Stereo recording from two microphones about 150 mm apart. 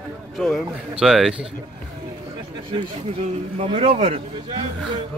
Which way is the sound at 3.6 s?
40° right (ahead or behind).